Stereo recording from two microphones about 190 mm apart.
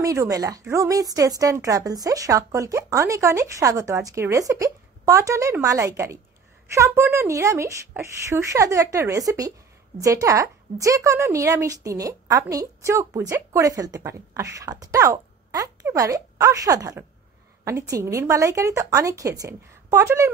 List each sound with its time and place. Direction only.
0.0 s a woman's voice: 15° right (ahead or behind)